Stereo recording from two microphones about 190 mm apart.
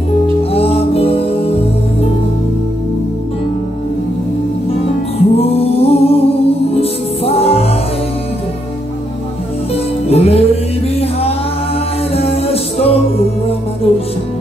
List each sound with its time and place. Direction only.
0.4 s music: 30° left (ahead or behind)
5.3 s music: 30° left (ahead or behind)
10.0 s music: 30° left (ahead or behind)